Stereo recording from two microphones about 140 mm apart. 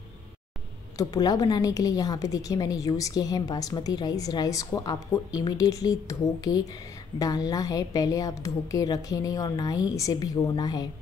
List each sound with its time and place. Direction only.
0.9 s a woman's voice: 25° left (ahead or behind)